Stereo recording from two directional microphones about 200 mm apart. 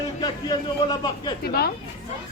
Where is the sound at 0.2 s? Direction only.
20° left (ahead or behind).